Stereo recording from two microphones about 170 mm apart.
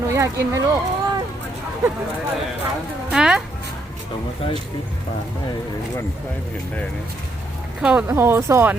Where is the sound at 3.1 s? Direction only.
5° right (ahead or behind).